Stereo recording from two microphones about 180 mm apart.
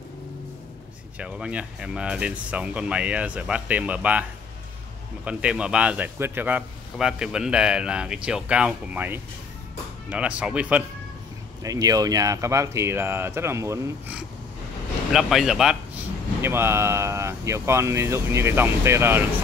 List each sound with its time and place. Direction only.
1.1 s a man's voice: 5° right (ahead or behind)
11.6 s speech: 20° right (ahead or behind)
15.1 s a man's voice: centre (ahead or behind)
16.3 s speech: 15° right (ahead or behind)